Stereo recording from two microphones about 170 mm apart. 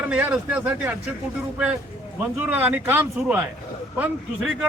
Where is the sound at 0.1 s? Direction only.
10° right (ahead or behind).